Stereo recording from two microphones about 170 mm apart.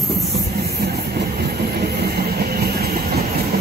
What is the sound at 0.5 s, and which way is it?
Train, 70° right (ahead or behind).